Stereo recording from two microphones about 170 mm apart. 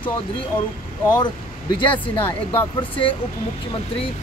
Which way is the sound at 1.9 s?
30° left (ahead or behind).